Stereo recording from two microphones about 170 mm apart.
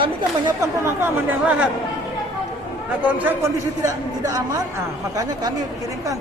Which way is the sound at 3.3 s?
15° right (ahead or behind).